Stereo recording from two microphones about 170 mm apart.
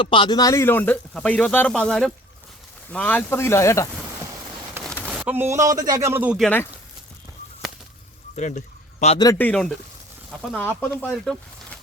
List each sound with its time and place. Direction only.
0.0 s speech: 30° left (ahead or behind)
4.8 s a sound: 5° left (ahead or behind)
5.1 s a man's voice: 10° right (ahead or behind)
6.3 s speech: 5° left (ahead or behind)
8.4 s a sound: 45° left (ahead or behind)
9.1 s a man's voice: 20° left (ahead or behind)
9.4 s speech: 5° left (ahead or behind)